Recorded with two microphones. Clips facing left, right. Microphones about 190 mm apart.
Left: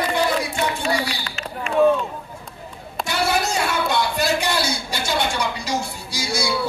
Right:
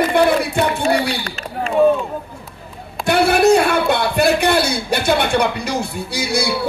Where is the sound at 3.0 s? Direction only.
60° right (ahead or behind).